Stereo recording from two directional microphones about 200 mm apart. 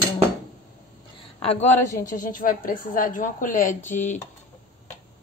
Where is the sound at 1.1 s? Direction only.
30° left (ahead or behind).